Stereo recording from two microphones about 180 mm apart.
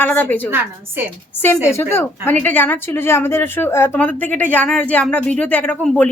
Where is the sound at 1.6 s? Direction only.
15° left (ahead or behind).